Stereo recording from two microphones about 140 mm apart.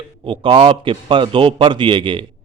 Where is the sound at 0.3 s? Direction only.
40° right (ahead or behind).